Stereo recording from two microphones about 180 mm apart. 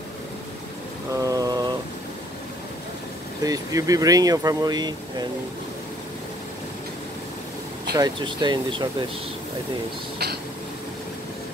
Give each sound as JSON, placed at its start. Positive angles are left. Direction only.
{"t": 1.1, "sound": "mantra", "side_deg": -20}
{"t": 3.4, "sound": "speech", "side_deg": -20}
{"t": 7.9, "sound": "speech", "side_deg": -25}